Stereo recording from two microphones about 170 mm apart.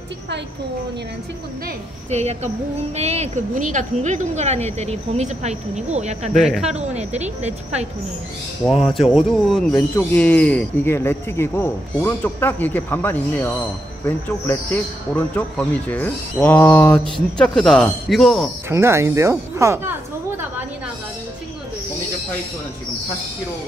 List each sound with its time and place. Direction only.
2.0 s a woman's voice: 40° right (ahead or behind)
6.4 s speech: 5° right (ahead or behind)
6.8 s a woman's voice: 40° right (ahead or behind)
9.1 s speech: centre (ahead or behind)
18.7 s a sound: 15° right (ahead or behind)